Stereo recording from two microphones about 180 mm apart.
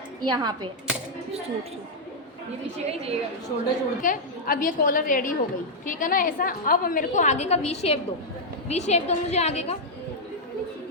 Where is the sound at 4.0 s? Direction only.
50° left (ahead or behind).